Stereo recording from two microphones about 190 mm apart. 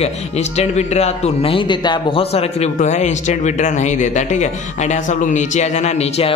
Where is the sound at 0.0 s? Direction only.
35° left (ahead or behind).